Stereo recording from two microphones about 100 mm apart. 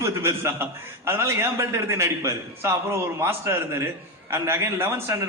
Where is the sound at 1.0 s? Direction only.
25° right (ahead or behind).